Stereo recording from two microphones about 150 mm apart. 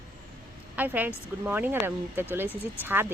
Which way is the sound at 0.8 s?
10° right (ahead or behind).